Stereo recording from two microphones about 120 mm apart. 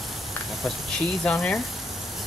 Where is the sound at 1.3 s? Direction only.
10° left (ahead or behind).